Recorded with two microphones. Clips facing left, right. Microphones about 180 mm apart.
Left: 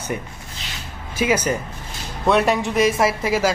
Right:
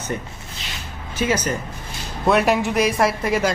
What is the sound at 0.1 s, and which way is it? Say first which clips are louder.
Speech: left 1 dB; 10° left (ahead or behind).